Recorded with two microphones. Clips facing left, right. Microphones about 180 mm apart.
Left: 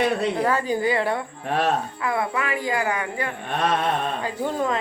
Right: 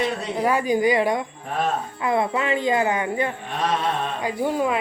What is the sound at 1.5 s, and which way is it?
Speech, 75° left (ahead or behind).